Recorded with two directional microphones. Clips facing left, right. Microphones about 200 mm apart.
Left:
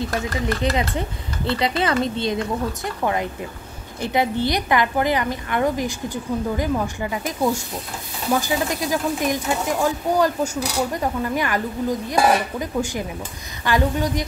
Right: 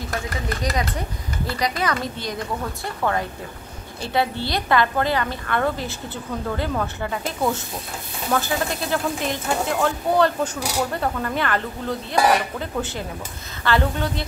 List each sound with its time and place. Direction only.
1.5 s a woman's voice: 25° left (ahead or behind)